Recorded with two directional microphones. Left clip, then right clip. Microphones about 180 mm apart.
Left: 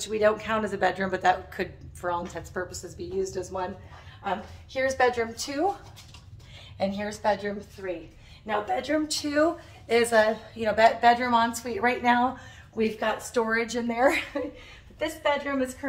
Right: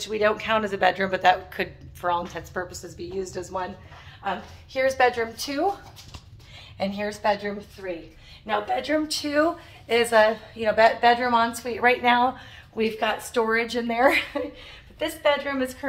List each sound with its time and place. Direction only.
0.0 s speech: 10° right (ahead or behind)
2.5 s speech: 15° right (ahead or behind)
4.7 s a woman's voice: 5° right (ahead or behind)
6.8 s speech: 10° right (ahead or behind)
8.5 s a woman's voice: centre (ahead or behind)